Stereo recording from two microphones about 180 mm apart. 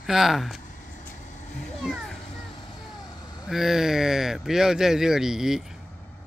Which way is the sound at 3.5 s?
Centre (ahead or behind).